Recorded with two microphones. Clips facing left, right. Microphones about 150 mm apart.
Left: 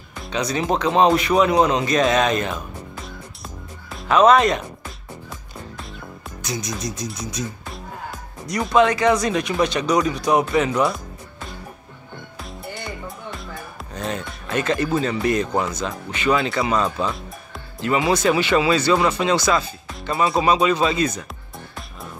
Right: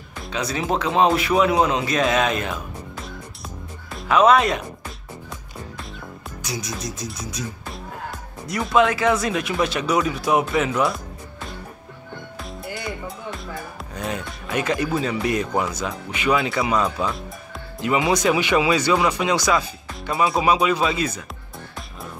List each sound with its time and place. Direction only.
0.3 s speech: 5° right (ahead or behind)
12.4 s music: centre (ahead or behind)
13.9 s music: 10° right (ahead or behind)
15.0 s speech: 5° right (ahead or behind)
17.7 s speech: 15° right (ahead or behind)